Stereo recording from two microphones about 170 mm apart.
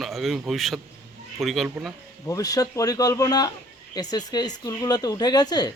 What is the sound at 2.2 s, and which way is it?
Speech, 20° left (ahead or behind).